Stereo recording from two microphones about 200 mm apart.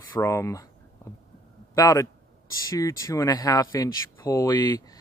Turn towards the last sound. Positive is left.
turn(degrees=20)  # may be behind; listen again after turning